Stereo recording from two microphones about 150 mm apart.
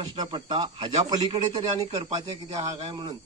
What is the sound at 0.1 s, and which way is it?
Speech, 30° right (ahead or behind).